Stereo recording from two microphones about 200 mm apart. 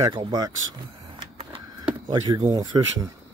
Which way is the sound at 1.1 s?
25° right (ahead or behind).